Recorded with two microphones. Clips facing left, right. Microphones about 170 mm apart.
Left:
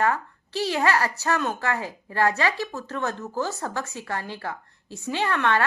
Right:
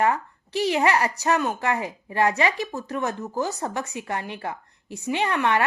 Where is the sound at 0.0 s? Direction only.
15° right (ahead or behind).